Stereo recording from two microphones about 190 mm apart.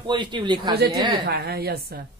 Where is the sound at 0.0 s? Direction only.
25° right (ahead or behind).